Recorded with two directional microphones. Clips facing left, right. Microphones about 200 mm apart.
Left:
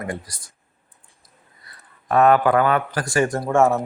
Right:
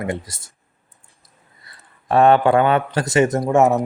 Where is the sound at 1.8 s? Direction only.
30° right (ahead or behind).